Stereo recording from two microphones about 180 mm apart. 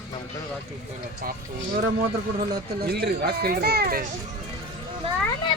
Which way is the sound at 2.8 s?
60° right (ahead or behind).